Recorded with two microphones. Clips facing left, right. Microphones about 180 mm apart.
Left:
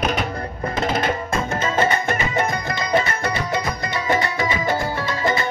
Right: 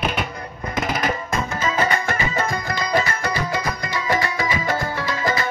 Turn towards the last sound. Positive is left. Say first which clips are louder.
# left 1 dB
turn(degrees=25)  # may be behind; listen again after turning